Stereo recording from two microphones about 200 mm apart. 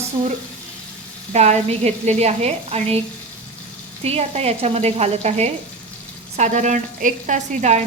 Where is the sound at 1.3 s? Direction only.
35° right (ahead or behind).